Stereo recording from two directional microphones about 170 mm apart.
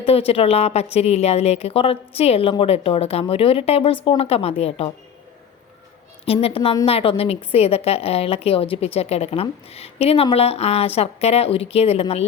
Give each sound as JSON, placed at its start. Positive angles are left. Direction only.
{"t": 0.0, "sound": "a woman's voice", "side_deg": 35}
{"t": 6.2, "sound": "a woman's voice", "side_deg": 35}